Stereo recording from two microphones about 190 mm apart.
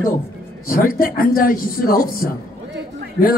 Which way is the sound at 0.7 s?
50° left (ahead or behind).